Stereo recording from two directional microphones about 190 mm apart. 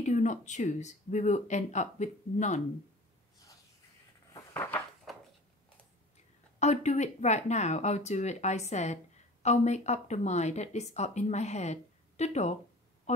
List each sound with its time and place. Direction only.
0.0 s speech: 40° left (ahead or behind)
4.3 s dishes: 15° left (ahead or behind)
5.1 s a sound: centre (ahead or behind)
6.6 s speech: 35° left (ahead or behind)